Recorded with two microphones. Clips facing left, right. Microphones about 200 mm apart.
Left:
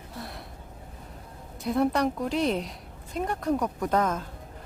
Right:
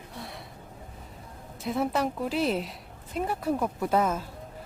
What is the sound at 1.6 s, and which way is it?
Speech, centre (ahead or behind).